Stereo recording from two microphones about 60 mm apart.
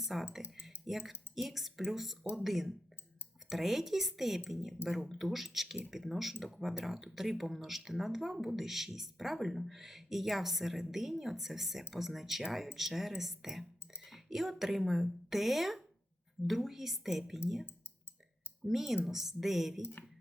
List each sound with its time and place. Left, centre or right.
0.0 s speech: centre
0.6 s a sound: centre
1.4 s speech: centre
18.7 s speech: centre
19.8 s speech: left